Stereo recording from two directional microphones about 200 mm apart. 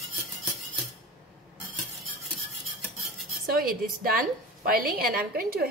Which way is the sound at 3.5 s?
45° right (ahead or behind).